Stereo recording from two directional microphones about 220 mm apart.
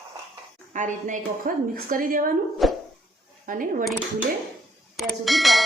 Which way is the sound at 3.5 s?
40° right (ahead or behind).